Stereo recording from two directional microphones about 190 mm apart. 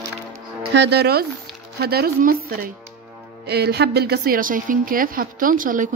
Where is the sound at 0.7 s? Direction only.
60° right (ahead or behind).